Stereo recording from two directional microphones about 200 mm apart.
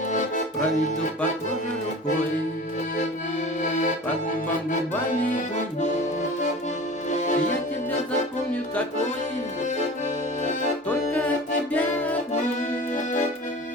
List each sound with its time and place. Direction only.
0.1 s accordion: 35° left (ahead or behind)
3.6 s accordion: 40° left (ahead or behind)
5.3 s accordion: 35° left (ahead or behind)
7.1 s music: 35° left (ahead or behind)
10.4 s accordion: 40° left (ahead or behind)
11.7 s music: 10° left (ahead or behind)